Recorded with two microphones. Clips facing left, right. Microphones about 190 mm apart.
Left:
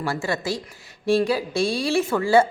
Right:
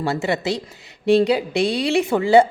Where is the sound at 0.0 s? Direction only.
20° right (ahead or behind).